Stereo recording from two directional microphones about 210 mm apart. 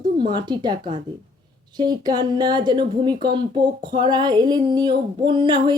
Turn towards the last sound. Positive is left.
turn(degrees=-20)  # may be behind; listen again after turning